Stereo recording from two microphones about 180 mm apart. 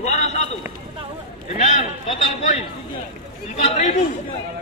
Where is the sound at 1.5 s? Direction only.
35° left (ahead or behind).